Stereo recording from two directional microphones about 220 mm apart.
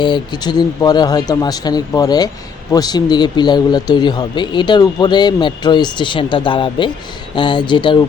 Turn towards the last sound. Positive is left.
turn(degrees=20)  # may be behind; listen again after turning